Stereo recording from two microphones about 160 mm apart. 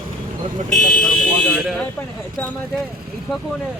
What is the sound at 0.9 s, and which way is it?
Speech, 5° left (ahead or behind).